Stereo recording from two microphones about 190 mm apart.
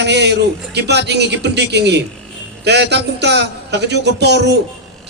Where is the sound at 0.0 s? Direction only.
65° right (ahead or behind).